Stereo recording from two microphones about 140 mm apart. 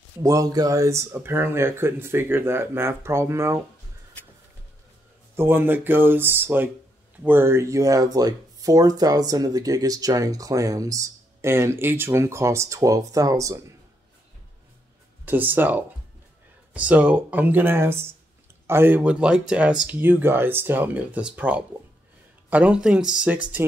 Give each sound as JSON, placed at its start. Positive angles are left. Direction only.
{"t": 0.2, "sound": "speech", "side_deg": -25}
{"t": 5.3, "sound": "speech", "side_deg": -15}
{"t": 15.2, "sound": "speech", "side_deg": -15}